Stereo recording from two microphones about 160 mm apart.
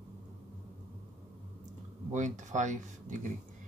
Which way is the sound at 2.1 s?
50° right (ahead or behind).